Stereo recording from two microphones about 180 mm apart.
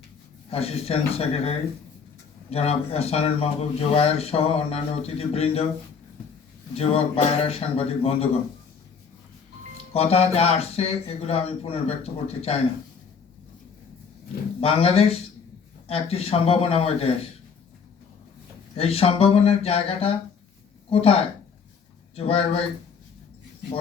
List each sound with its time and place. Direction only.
0.5 s speech: 35° left (ahead or behind)
6.7 s speech: 35° left (ahead or behind)
9.9 s speech: 35° left (ahead or behind)
14.6 s speech: 35° left (ahead or behind)
18.8 s speech: 30° left (ahead or behind)